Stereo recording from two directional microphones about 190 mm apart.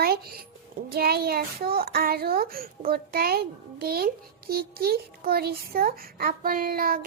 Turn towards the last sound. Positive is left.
turn(degrees=-50)  # may be behind; listen again after turning